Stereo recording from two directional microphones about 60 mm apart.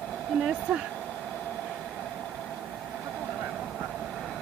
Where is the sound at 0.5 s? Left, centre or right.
Centre.